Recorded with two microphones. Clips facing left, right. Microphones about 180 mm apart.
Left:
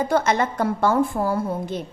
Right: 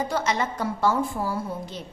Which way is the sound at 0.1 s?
55° left (ahead or behind).